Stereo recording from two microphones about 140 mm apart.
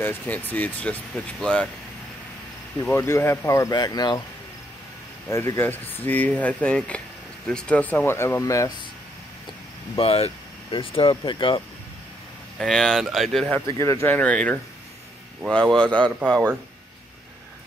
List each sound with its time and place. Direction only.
0.0 s speech: 15° left (ahead or behind)
2.8 s speech: 15° left (ahead or behind)
5.3 s speech: 20° left (ahead or behind)
9.9 s speech: 45° left (ahead or behind)
12.5 s speech: 5° left (ahead or behind)
13.7 s speech: 20° left (ahead or behind)
14.0 s speech: 10° left (ahead or behind)